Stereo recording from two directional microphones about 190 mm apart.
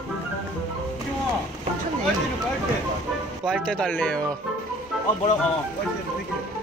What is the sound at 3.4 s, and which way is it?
Speech, 5° left (ahead or behind).